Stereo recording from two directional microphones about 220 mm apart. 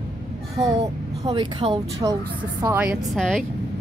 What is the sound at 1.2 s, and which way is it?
A woman's voice, 20° right (ahead or behind).